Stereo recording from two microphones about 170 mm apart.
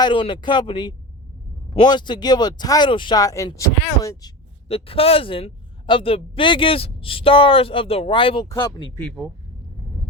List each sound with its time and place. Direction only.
0.0 s speech: 30° left (ahead or behind)
4.7 s a man's voice: 35° left (ahead or behind)
8.4 s speech: 15° left (ahead or behind)